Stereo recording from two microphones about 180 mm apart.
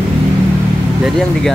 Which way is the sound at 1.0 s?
Centre (ahead or behind).